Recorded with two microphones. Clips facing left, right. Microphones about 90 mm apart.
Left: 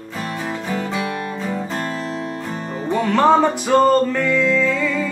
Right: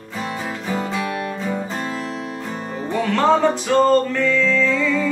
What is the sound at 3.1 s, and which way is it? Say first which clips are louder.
Music: left 2 dB; 15° left (ahead or behind).